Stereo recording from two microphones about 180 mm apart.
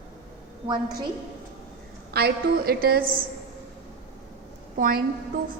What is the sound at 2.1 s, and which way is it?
Speech, 60° right (ahead or behind).